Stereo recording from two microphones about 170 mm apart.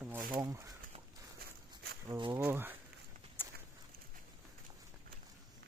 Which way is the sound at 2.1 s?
20° right (ahead or behind).